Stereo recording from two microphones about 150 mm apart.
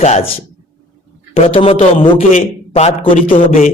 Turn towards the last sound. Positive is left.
turn(degrees=65)  # may be behind; listen again after turning